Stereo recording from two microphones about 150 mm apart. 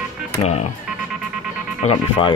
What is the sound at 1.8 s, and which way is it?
Speech, 45° left (ahead or behind).